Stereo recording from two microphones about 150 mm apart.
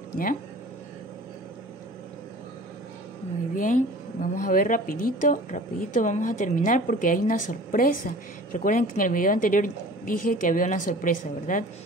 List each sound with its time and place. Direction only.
3.5 s a woman's voice: 60° left (ahead or behind)